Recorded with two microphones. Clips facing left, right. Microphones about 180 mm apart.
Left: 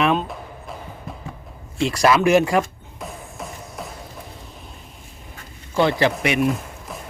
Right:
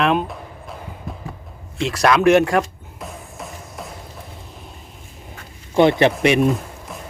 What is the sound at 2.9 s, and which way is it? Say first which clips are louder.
Music: even; centre (ahead or behind).